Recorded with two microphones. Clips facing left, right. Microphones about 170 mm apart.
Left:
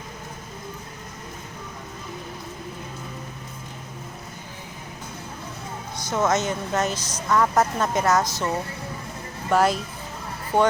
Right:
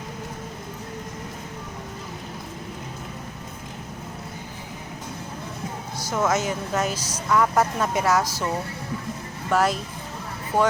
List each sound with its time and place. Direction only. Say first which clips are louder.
6.0 s speech: left 1 dB; 5° right (ahead or behind)
9.5 s speech: left 2 dB; centre (ahead or behind)